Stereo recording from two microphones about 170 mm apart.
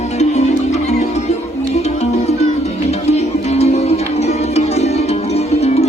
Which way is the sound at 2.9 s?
40° left (ahead or behind).